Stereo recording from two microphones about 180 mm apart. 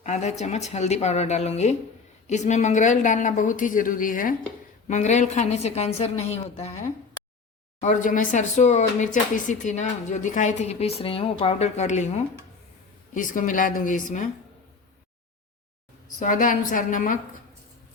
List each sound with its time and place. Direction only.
0.0 s a woman's voice: 40° left (ahead or behind)
7.8 s speech: 45° left (ahead or behind)
13.1 s a woman's voice: 45° left (ahead or behind)
16.1 s a woman's voice: 45° left (ahead or behind)